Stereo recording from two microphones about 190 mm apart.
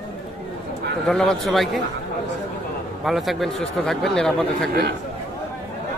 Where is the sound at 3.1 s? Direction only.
Centre (ahead or behind).